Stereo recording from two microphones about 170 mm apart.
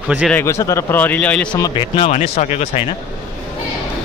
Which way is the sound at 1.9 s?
35° left (ahead or behind).